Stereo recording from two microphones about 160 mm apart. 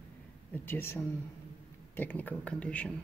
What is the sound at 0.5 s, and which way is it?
Speech, 15° left (ahead or behind).